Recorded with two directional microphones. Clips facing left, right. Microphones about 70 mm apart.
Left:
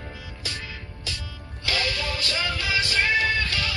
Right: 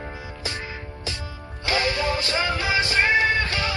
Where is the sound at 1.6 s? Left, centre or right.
Right.